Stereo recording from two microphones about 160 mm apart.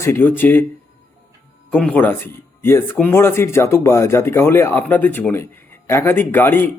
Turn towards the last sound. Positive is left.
turn(degrees=10)  # may be behind; listen again after turning